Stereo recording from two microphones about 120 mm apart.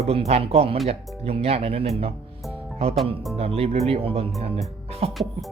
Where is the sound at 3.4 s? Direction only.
55° right (ahead or behind).